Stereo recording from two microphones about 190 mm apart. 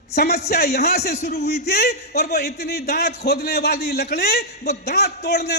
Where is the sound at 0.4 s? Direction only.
55° left (ahead or behind).